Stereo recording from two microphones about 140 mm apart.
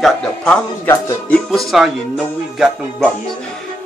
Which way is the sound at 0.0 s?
5° left (ahead or behind).